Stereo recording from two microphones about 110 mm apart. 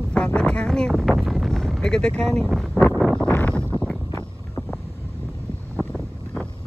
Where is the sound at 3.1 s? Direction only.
15° left (ahead or behind).